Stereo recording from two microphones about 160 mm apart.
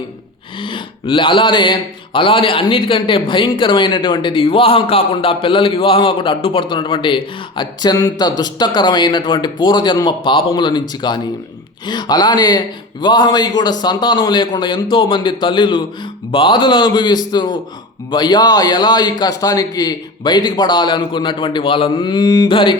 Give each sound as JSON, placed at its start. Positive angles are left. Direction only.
{"t": 0.6, "sound": "a man's voice", "side_deg": 30}